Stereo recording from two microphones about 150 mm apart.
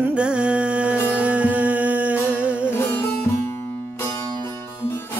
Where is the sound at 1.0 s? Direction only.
10° right (ahead or behind).